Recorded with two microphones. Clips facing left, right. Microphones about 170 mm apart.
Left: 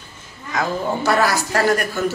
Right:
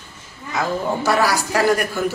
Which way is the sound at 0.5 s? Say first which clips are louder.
Even; 5° right (ahead or behind).